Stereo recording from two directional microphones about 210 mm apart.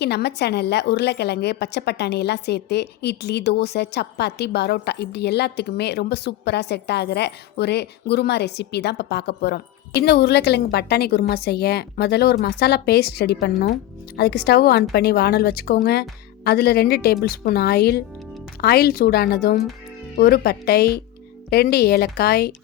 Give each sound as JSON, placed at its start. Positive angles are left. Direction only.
{"t": 0.0, "sound": "a woman's voice", "side_deg": 50}